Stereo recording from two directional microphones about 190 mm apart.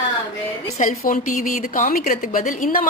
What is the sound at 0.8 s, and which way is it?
A woman's voice, 45° left (ahead or behind).